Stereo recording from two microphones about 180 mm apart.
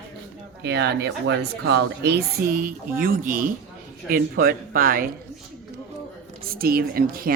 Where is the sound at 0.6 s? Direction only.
70° right (ahead or behind); by 5.1 s 50° right (ahead or behind).